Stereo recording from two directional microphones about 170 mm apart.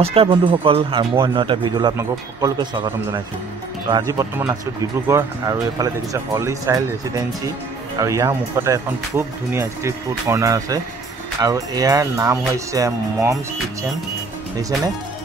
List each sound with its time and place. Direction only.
0.0 s speech: 30° right (ahead or behind)